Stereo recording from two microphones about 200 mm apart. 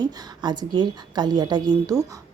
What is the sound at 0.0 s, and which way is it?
A woman's voice, 20° right (ahead or behind).